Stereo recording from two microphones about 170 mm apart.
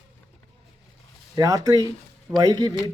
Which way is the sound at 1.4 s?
20° right (ahead or behind).